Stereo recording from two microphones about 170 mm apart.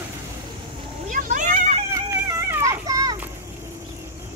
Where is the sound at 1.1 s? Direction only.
50° right (ahead or behind).